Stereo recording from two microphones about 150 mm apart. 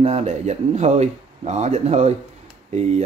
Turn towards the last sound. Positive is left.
turn(degrees=-50)  # may be behind; listen again after turning